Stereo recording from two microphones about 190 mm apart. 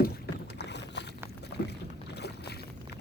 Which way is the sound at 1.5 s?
60° left (ahead or behind).